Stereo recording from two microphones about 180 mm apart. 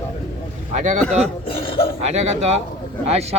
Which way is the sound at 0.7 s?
45° right (ahead or behind).